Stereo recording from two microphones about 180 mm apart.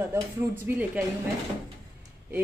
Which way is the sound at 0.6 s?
10° right (ahead or behind).